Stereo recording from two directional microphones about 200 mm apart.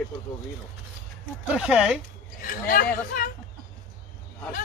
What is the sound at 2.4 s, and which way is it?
Speech, 45° left (ahead or behind).